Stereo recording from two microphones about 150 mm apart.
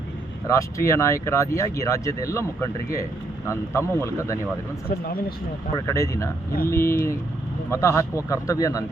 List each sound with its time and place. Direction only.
0.4 s speech: 20° left (ahead or behind)
5.7 s speech: 20° left (ahead or behind)
6.7 s speech: 75° left (ahead or behind)
7.7 s speech: 20° left (ahead or behind)